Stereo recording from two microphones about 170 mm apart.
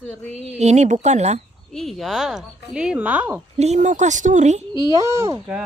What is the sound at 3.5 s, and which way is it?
Speech, 45° right (ahead or behind).